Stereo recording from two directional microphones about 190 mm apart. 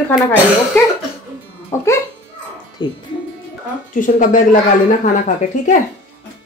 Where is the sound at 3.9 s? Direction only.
45° left (ahead or behind).